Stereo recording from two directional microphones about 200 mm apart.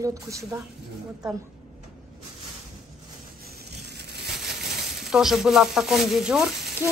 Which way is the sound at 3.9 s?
55° right (ahead or behind).